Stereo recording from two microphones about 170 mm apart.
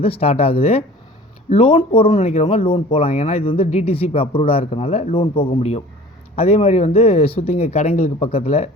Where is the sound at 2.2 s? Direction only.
40° left (ahead or behind).